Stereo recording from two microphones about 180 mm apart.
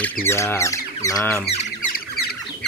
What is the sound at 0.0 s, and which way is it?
Speech, 15° left (ahead or behind).